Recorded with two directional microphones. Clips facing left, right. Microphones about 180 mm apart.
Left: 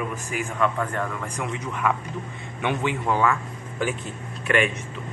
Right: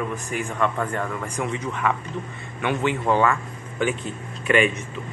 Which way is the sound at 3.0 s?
Centre (ahead or behind).